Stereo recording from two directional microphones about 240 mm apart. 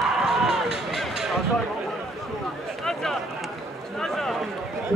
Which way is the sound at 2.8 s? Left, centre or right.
Centre.